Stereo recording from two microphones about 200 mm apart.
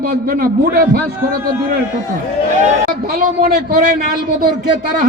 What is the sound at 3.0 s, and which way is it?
Speech, 45° right (ahead or behind).